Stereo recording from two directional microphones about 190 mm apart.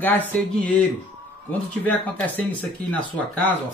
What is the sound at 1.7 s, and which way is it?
Speech, 10° left (ahead or behind).